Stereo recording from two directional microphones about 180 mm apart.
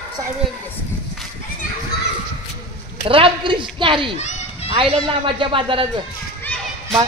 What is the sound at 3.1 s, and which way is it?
Speech, 30° right (ahead or behind).